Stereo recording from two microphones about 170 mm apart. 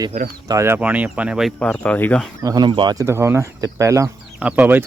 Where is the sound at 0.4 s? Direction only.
15° right (ahead or behind); by 2.3 s 5° left (ahead or behind).